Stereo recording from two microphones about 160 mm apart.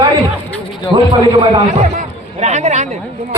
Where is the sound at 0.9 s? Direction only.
30° right (ahead or behind).